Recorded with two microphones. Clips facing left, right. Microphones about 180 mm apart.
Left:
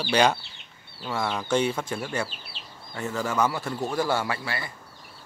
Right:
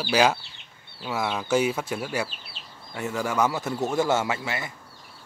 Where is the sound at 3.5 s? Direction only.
20° right (ahead or behind).